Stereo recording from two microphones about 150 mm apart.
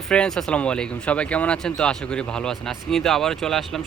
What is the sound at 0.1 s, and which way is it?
Speech, 5° left (ahead or behind).